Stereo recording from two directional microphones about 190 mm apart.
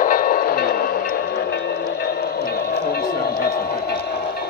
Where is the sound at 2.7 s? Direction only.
55° left (ahead or behind).